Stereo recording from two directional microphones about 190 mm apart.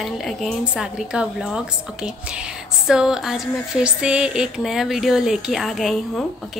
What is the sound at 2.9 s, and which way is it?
A woman's voice, 5° right (ahead or behind).